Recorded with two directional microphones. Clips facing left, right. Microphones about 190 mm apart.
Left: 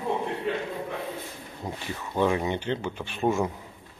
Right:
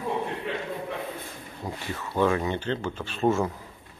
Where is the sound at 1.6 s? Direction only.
15° left (ahead or behind).